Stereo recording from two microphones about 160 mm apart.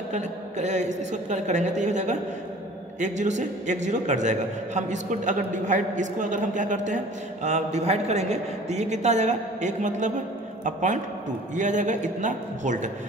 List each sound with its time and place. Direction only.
0.1 s a man's voice: 45° right (ahead or behind)